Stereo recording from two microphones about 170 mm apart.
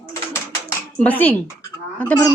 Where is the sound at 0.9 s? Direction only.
10° left (ahead or behind).